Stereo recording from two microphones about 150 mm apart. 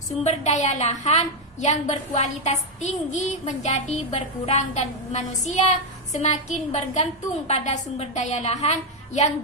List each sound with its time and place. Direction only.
0.2 s a woman's voice: 50° left (ahead or behind)